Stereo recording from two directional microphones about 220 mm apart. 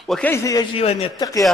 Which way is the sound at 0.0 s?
5° left (ahead or behind).